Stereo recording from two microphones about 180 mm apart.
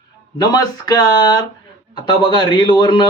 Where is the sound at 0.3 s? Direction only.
20° left (ahead or behind).